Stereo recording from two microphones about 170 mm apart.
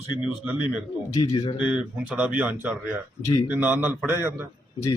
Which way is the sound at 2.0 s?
10° right (ahead or behind).